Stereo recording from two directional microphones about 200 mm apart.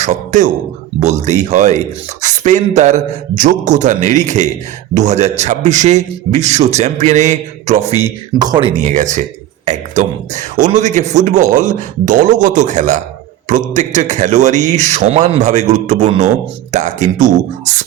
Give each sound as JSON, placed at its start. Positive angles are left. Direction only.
{"t": 0.0, "sound": "speech", "side_deg": -40}
{"t": 7.9, "sound": "speech", "side_deg": -15}